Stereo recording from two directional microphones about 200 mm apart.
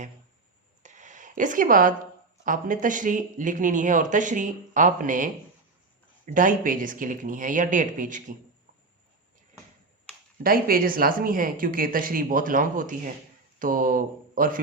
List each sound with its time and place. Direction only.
0.8 s a sound: 40° right (ahead or behind)
2.4 s speech: 40° right (ahead or behind)
10.4 s speech: 45° right (ahead or behind)